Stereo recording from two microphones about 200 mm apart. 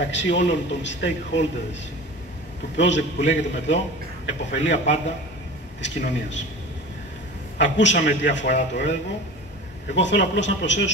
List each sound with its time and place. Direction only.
0.0 s a man's voice: 65° left (ahead or behind)
2.7 s a man's voice: 65° left (ahead or behind)
7.5 s a man's voice: 65° left (ahead or behind)
9.9 s a man's voice: 65° left (ahead or behind)